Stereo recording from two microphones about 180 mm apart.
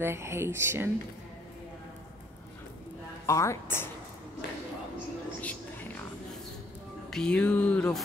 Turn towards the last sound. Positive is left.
turn(degrees=5)  # may be behind; listen again after turning